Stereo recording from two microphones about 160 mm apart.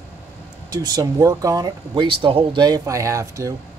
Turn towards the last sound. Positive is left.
turn(degrees=-20)  # may be behind; listen again after turning